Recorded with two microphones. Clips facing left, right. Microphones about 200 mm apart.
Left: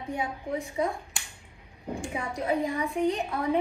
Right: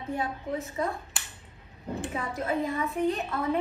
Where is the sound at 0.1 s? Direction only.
15° left (ahead or behind).